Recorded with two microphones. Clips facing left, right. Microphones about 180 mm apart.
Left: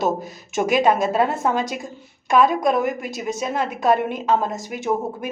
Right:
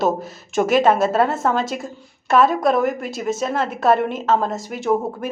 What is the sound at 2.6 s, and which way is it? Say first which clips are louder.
Speech: right 2 dB; centre (ahead or behind).